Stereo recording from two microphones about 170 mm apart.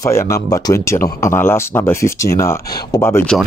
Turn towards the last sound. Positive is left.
turn(degrees=15)  # may be behind; listen again after turning